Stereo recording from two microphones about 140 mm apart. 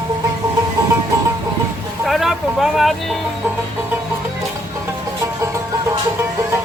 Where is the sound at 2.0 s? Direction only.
Centre (ahead or behind).